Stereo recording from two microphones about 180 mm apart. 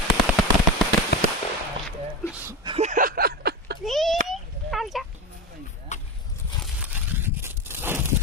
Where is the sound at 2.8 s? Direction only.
45° right (ahead or behind); by 3.7 s 65° right (ahead or behind).